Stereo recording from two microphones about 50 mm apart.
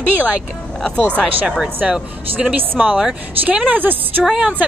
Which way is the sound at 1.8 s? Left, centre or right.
Centre.